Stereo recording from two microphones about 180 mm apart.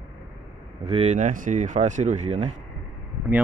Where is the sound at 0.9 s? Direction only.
35° right (ahead or behind).